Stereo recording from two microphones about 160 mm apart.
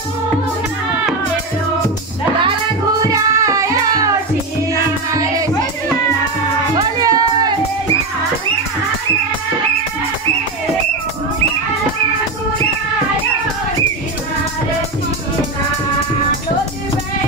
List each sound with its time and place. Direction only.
3.0 s music: 20° right (ahead or behind)
5.1 s music: 20° right (ahead or behind)
7.0 s music: 25° right (ahead or behind)